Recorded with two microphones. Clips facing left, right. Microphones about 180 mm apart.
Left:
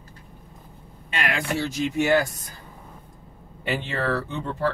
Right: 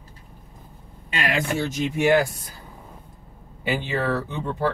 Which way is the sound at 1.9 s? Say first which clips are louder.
Right 2 dB; 15° right (ahead or behind).